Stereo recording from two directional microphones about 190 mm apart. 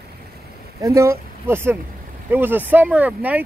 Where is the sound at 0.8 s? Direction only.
15° right (ahead or behind).